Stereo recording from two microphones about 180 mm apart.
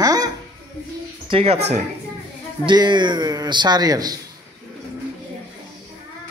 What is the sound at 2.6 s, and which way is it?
A man's voice, 25° right (ahead or behind).